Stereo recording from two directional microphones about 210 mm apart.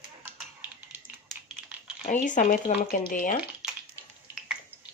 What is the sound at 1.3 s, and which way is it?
Typing, centre (ahead or behind).